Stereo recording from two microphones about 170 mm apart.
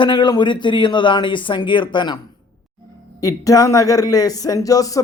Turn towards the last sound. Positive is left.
turn(degrees=20)  # may be behind; listen again after turning